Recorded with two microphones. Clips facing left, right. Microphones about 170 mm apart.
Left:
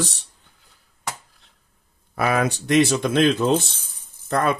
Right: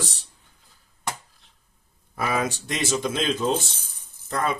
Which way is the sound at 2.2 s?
60° left (ahead or behind).